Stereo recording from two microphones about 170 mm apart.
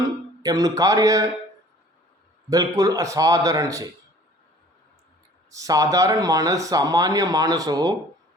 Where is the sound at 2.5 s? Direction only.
20° right (ahead or behind).